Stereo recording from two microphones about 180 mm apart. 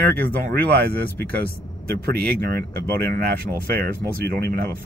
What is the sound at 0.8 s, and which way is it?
Speech, 60° right (ahead or behind).